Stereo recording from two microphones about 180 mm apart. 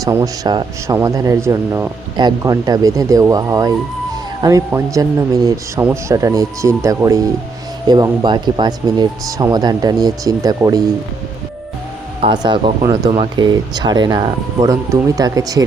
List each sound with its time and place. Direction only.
0.0 s speech: 20° right (ahead or behind)
12.2 s speech: 25° right (ahead or behind)